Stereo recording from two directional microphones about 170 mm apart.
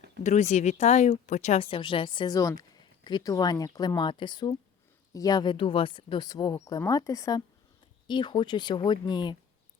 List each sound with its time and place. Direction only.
0.2 s speech: 45° left (ahead or behind); by 9.4 s 25° left (ahead or behind)